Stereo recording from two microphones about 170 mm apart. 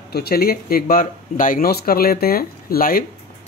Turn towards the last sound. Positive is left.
turn(degrees=60)  # may be behind; listen again after turning